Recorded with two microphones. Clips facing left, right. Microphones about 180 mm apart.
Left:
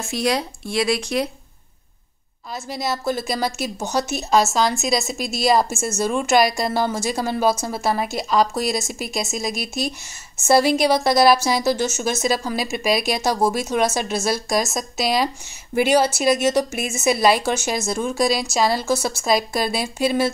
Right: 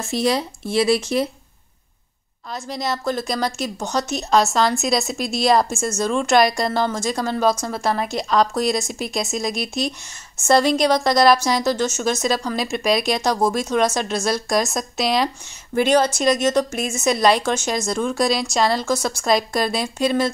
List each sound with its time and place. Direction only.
0.0 s speech: centre (ahead or behind)
2.5 s speech: 5° left (ahead or behind)